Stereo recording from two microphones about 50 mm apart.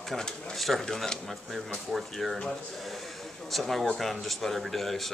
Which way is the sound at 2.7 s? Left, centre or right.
Centre.